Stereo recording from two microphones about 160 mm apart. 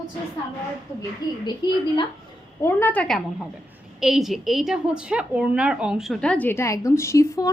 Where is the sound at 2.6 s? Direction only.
10° left (ahead or behind).